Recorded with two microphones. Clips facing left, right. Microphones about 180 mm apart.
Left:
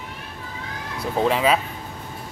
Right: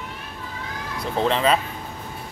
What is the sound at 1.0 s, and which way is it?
Speech, 5° left (ahead or behind).